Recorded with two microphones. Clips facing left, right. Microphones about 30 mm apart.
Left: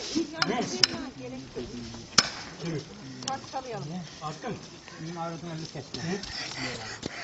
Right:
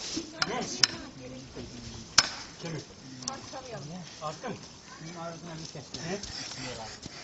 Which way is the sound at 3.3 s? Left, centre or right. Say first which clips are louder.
Left 7 dB; centre.